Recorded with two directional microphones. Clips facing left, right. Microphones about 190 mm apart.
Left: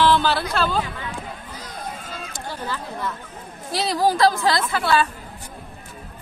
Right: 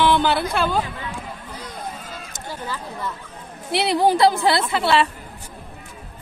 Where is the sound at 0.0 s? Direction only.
15° right (ahead or behind).